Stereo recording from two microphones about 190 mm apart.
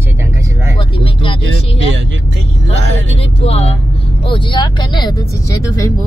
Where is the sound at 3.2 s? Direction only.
35° left (ahead or behind); by 5.9 s 15° left (ahead or behind).